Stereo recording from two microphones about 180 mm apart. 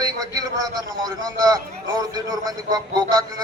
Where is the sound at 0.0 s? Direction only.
20° right (ahead or behind).